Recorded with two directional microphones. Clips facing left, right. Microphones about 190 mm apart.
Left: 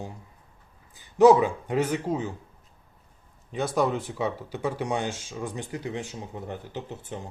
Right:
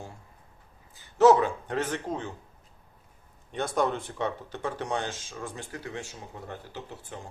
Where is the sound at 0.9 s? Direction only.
15° left (ahead or behind).